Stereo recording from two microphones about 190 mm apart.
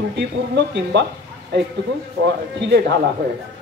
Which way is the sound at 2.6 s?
60° right (ahead or behind).